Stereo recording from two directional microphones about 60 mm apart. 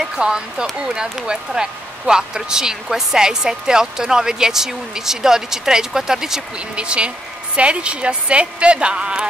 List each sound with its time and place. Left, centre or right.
0.0 s a woman's voice: centre